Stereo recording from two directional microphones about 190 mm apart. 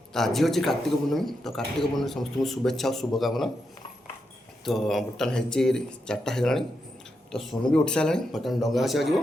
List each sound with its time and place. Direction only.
0.1 s a man's voice: centre (ahead or behind)
4.6 s a man's voice: centre (ahead or behind)
7.7 s a man's voice: 5° left (ahead or behind)